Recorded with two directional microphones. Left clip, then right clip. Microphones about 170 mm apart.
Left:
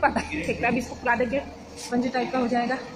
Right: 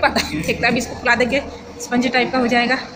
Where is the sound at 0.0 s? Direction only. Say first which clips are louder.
Right 6 dB; 5° left (ahead or behind); by 2.8 s 15° right (ahead or behind).